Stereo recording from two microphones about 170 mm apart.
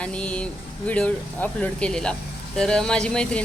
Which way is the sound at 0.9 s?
10° left (ahead or behind).